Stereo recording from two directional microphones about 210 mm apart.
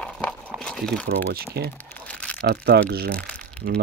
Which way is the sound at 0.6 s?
5° left (ahead or behind).